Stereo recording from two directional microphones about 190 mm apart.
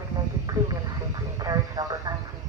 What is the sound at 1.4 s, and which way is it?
Speech, 20° right (ahead or behind).